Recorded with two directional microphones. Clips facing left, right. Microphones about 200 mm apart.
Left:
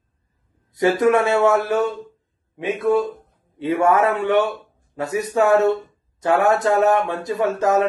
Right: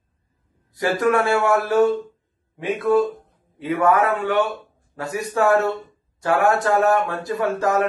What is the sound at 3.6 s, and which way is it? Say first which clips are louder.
Speech: left 1 dB; 25° left (ahead or behind).